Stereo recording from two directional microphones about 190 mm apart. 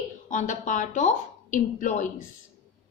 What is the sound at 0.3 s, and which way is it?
A woman's voice, 40° left (ahead or behind).